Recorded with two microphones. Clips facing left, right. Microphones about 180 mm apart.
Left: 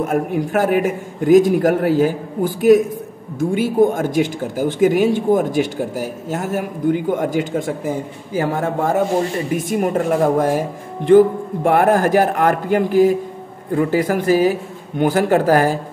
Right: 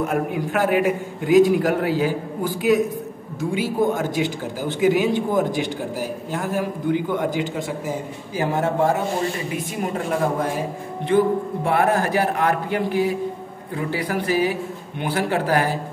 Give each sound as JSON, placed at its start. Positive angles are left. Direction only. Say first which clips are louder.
{"t": 0.0, "sound": "a man's voice", "louder": "left 4 dB", "side_deg": 45}
{"t": 9.5, "sound": "a man's voice", "louder": "left 7 dB", "side_deg": 45}